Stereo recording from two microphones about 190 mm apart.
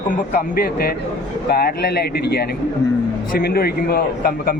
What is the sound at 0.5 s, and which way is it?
A man's voice, 50° left (ahead or behind).